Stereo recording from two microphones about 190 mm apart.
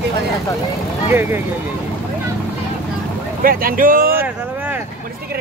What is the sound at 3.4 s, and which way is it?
Speech, 50° right (ahead or behind).